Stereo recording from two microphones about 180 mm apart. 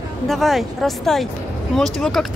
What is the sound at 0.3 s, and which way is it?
Speech, centre (ahead or behind).